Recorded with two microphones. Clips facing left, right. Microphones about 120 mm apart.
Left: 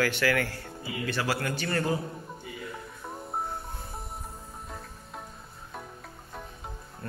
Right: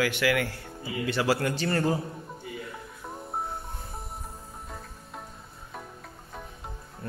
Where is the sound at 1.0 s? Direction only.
20° right (ahead or behind).